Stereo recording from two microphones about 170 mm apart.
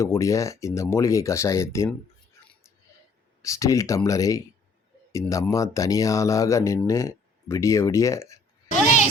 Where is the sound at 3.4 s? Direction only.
20° left (ahead or behind).